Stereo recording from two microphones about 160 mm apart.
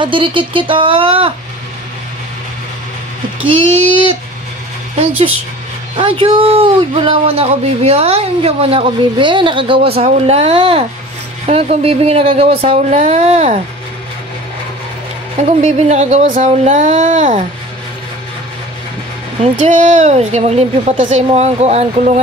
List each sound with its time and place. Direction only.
0.0 s speech: 30° right (ahead or behind)
5.9 s speech: 35° right (ahead or behind)
15.3 s a woman's voice: 45° right (ahead or behind)
19.4 s a woman's voice: 45° right (ahead or behind)